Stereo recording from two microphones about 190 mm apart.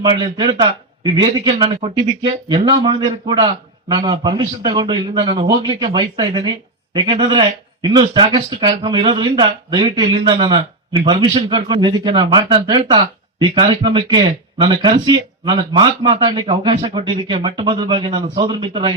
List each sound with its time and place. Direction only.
0.0 s a man's voice: 20° right (ahead or behind)